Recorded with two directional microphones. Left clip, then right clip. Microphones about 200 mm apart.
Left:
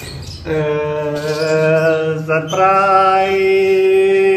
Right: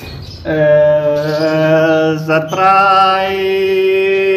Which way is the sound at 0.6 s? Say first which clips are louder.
Right 9 dB; 40° right (ahead or behind).